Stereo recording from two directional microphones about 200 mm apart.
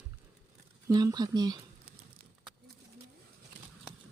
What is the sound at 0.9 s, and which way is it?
Speech, 20° right (ahead or behind).